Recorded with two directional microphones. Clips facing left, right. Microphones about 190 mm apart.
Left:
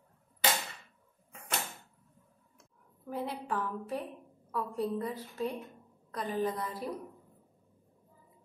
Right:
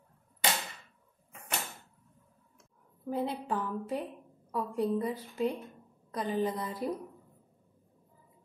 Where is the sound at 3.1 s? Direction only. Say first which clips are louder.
Right 3 dB; 25° right (ahead or behind).